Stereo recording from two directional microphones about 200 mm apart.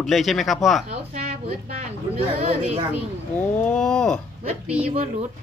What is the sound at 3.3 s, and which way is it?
Speech, 5° left (ahead or behind).